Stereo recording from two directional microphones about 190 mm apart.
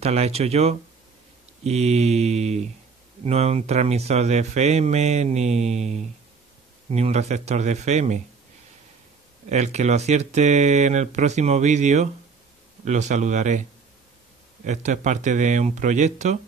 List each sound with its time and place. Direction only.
0.0 s speech: 35° right (ahead or behind)
9.5 s speech: 35° right (ahead or behind)
14.6 s speech: 40° right (ahead or behind)